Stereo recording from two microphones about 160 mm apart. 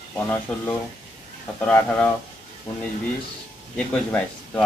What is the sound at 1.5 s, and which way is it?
Speech, 10° left (ahead or behind).